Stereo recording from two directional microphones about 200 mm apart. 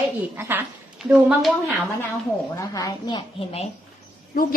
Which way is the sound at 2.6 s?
15° left (ahead or behind).